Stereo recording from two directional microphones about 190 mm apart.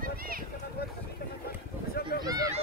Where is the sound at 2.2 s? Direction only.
20° right (ahead or behind).